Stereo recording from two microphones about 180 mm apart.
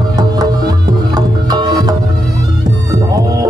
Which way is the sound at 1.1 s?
20° right (ahead or behind).